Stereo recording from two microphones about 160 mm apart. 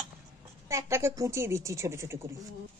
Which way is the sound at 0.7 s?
20° right (ahead or behind).